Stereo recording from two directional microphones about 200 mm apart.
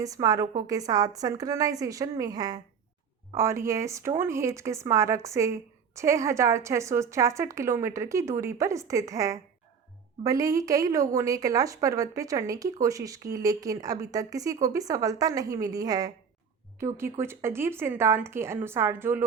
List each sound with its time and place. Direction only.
0.0 s speech: 15° right (ahead or behind)